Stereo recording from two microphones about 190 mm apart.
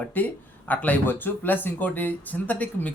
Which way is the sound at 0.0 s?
10° left (ahead or behind).